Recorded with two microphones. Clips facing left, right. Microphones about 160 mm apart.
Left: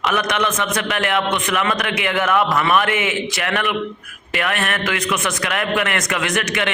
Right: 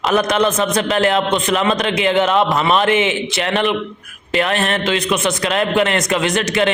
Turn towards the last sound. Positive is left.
turn(degrees=-30)  # may be behind; listen again after turning